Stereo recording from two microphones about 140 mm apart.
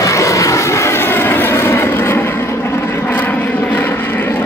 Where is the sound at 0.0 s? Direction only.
20° left (ahead or behind).